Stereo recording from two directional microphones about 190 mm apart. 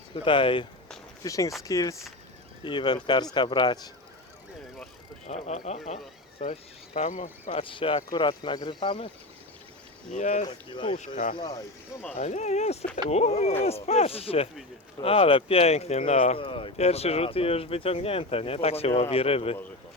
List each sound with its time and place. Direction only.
0.1 s speech: 25° left (ahead or behind)
5.2 s speech: 35° left (ahead or behind)
7.5 s speech: 25° left (ahead or behind)
10.1 s speech: 40° left (ahead or behind)
10.4 s speech: 25° left (ahead or behind)
10.9 s speech: 35° left (ahead or behind)
11.3 s speech: 20° left (ahead or behind)
12.1 s speech: 35° left (ahead or behind)